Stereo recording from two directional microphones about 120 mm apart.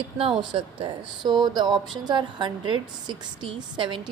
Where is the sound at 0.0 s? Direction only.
50° right (ahead or behind).